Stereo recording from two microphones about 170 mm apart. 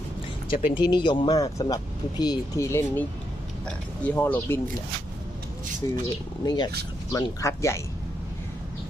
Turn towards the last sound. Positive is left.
turn(degrees=15)  # may be behind; listen again after turning